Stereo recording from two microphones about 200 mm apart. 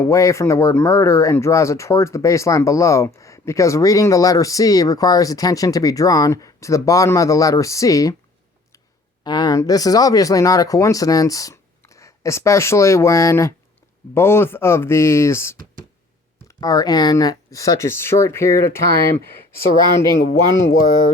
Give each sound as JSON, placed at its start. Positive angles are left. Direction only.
{"t": 0.0, "sound": "speech", "side_deg": 15}
{"t": 9.2, "sound": "speech", "side_deg": 20}